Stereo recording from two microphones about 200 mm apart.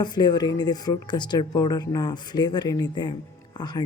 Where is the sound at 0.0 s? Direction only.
20° left (ahead or behind).